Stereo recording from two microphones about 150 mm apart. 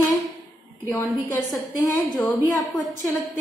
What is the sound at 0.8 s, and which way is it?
A woman's voice, 15° left (ahead or behind).